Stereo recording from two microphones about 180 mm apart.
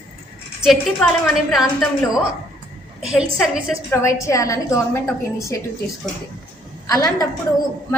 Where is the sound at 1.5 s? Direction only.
Centre (ahead or behind).